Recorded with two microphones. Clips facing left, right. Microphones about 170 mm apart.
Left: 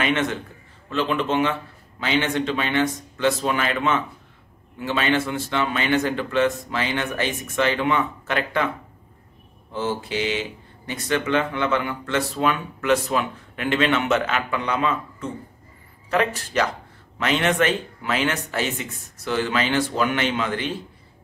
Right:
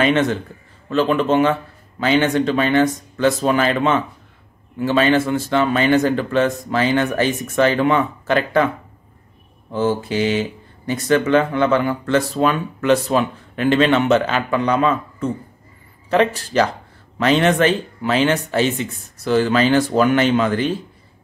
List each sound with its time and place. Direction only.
0.0 s speech: 35° right (ahead or behind)
9.7 s mantra: 45° right (ahead or behind)
10.9 s speech: 40° right (ahead or behind)